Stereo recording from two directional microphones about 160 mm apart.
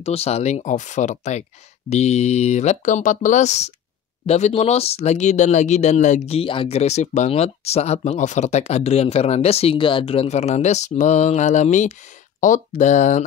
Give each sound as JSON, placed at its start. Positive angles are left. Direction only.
{"t": 0.0, "sound": "speech", "side_deg": 40}